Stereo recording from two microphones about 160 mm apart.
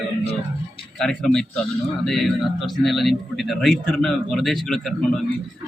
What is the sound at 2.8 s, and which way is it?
A man's voice, centre (ahead or behind).